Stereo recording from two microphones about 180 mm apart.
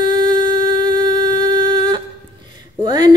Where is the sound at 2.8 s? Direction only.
25° right (ahead or behind).